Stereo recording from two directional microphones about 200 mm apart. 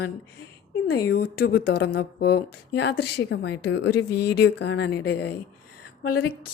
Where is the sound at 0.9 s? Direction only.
55° left (ahead or behind).